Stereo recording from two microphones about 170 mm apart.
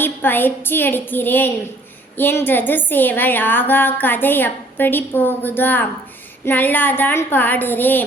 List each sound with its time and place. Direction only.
0.0 s a woman's voice: 10° left (ahead or behind)